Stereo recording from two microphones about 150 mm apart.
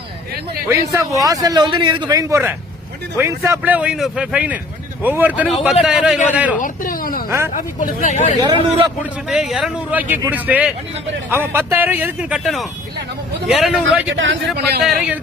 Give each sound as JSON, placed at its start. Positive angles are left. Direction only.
{"t": 0.7, "sound": "a man's voice", "side_deg": -20}
{"t": 6.6, "sound": "a sound", "side_deg": 65}
{"t": 7.3, "sound": "speech", "side_deg": -20}
{"t": 7.5, "sound": "speech", "side_deg": 60}
{"t": 8.4, "sound": "a man's voice", "side_deg": -30}
{"t": 9.3, "sound": "a man's voice", "side_deg": -5}
{"t": 13.5, "sound": "a man's voice", "side_deg": -5}
{"t": 14.5, "sound": "a man's voice", "side_deg": -90}
{"t": 14.8, "sound": "a man's voice", "side_deg": -10}